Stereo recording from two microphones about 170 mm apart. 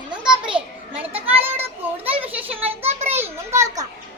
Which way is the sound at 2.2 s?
10° right (ahead or behind).